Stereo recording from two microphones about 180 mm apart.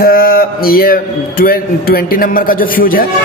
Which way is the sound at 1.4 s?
55° left (ahead or behind).